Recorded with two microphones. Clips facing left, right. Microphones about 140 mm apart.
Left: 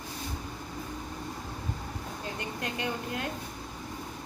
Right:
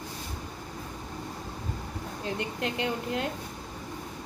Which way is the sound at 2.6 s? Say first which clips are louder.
Right 1 dB; 25° right (ahead or behind).